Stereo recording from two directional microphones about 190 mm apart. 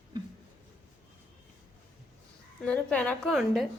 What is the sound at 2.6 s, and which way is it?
A woman's voice, 5° left (ahead or behind).